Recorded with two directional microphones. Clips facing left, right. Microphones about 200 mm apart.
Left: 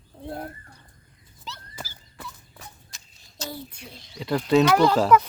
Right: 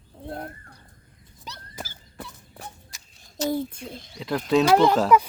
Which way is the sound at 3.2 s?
50° right (ahead or behind).